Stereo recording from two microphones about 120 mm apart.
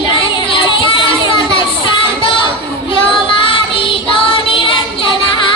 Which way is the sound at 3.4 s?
45° left (ahead or behind).